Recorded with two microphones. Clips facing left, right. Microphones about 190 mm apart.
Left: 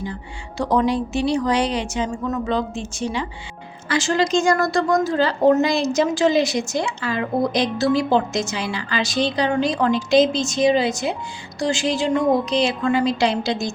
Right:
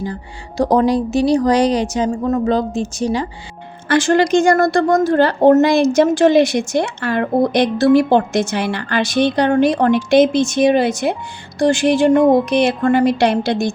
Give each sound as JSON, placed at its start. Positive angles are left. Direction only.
{"t": 0.0, "sound": "speech", "side_deg": -40}
{"t": 3.9, "sound": "a woman's voice", "side_deg": -55}